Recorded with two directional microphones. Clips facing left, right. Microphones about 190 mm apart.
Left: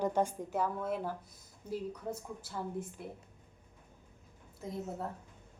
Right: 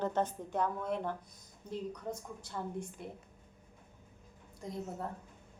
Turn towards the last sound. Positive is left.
turn(degrees=0)  # may be behind; listen again after turning